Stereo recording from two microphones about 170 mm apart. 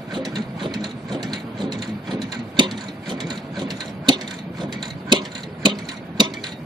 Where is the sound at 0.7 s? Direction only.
Centre (ahead or behind).